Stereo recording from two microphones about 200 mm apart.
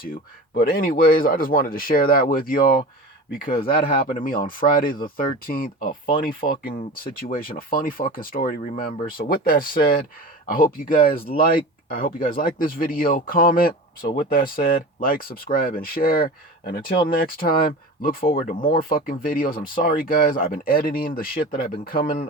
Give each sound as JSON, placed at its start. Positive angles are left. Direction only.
{"t": 0.0, "sound": "speech", "side_deg": 45}